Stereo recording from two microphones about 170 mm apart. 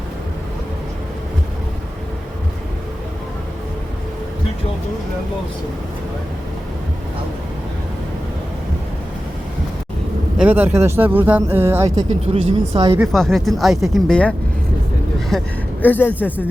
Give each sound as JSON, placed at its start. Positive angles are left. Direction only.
{"t": 10.3, "sound": "speech", "side_deg": -10}
{"t": 12.2, "sound": "speech", "side_deg": -35}
{"t": 13.0, "sound": "speech", "side_deg": 0}